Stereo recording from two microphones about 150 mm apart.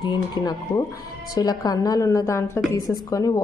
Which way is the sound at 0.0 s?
25° left (ahead or behind).